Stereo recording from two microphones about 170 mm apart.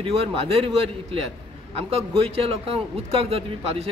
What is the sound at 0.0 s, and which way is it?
Speech, 35° right (ahead or behind).